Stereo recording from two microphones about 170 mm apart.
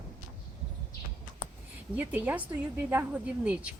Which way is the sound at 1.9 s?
10° right (ahead or behind).